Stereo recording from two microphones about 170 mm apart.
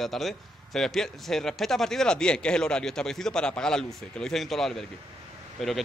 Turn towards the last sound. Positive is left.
turn(degrees=0)  # may be behind; listen again after turning